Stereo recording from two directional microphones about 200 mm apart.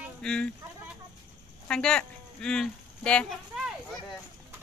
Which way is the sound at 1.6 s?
5° left (ahead or behind).